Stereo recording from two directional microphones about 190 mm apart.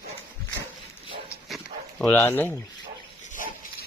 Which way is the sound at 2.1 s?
10° left (ahead or behind).